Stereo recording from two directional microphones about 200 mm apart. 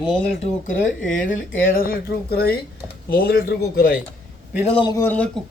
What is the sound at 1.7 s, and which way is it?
Speech, 50° left (ahead or behind).